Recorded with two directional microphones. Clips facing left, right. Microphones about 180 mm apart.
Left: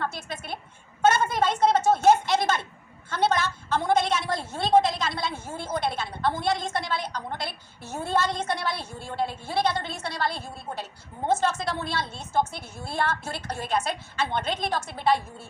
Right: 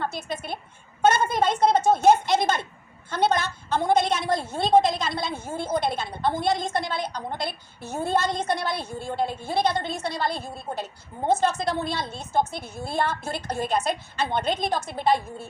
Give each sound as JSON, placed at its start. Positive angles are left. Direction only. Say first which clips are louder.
{"t": 0.0, "sound": "a woman's voice", "louder": "right 2 dB", "side_deg": -20}